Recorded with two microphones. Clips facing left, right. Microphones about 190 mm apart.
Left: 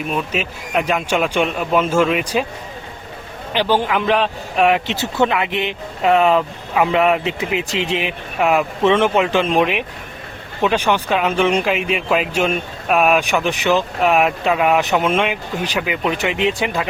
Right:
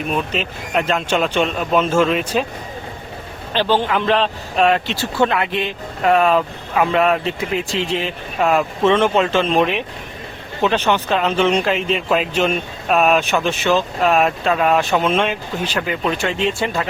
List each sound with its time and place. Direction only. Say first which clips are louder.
0.1 s speech: right 1 dB; 5° left (ahead or behind)
3.5 s speech: even; 10° left (ahead or behind)